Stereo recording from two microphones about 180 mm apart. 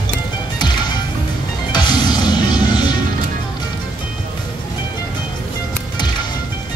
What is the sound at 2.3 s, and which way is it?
Music, 25° left (ahead or behind).